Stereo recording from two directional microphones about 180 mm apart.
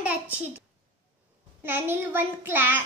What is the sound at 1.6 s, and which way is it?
Child singing, 10° right (ahead or behind).